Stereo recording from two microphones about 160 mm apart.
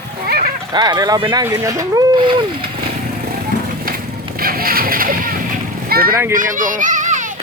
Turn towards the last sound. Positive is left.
turn(degrees=-50)  # may be behind; listen again after turning